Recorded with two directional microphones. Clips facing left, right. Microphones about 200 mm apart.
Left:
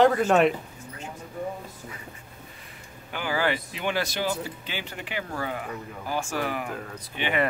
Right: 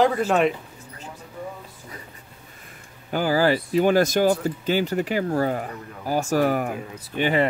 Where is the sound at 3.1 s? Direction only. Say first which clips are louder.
Right 7 dB; 40° right (ahead or behind).